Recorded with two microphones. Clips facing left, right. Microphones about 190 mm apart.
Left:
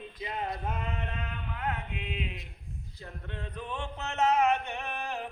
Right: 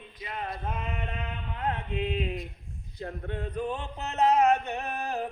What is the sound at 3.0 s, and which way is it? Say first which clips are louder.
Music: right 8 dB; 55° right (ahead or behind).